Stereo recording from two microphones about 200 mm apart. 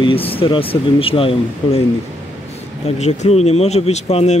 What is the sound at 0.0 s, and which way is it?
Speech, 25° left (ahead or behind).